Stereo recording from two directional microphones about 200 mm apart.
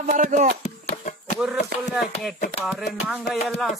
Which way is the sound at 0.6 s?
35° left (ahead or behind).